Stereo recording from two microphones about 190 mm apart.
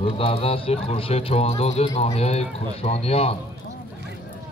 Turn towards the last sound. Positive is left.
turn(degrees=30)  # may be behind; listen again after turning